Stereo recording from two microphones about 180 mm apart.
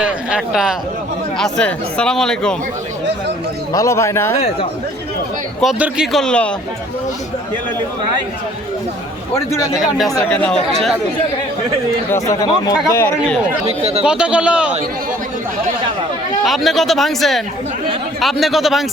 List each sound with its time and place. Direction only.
0.0 s speech: 5° right (ahead or behind)
3.7 s speech: 20° left (ahead or behind)
5.5 s speech: centre (ahead or behind)
9.3 s speech: 15° left (ahead or behind)
10.7 s speech: centre (ahead or behind)
12.1 s speech: 20° left (ahead or behind)
13.7 s speech: 35° right (ahead or behind)
14.0 s speech: 5° right (ahead or behind)
16.4 s speech: centre (ahead or behind)